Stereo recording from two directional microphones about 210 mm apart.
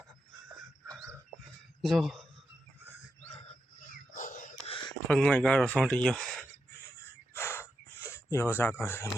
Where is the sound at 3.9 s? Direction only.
40° left (ahead or behind).